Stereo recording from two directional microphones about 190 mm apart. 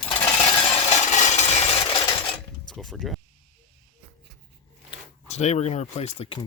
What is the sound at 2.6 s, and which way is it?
Speech, centre (ahead or behind).